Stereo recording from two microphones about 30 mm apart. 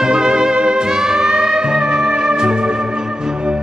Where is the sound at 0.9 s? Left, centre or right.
Centre.